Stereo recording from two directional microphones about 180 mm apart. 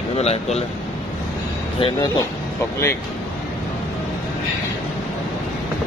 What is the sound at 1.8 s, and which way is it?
Speech, 30° left (ahead or behind).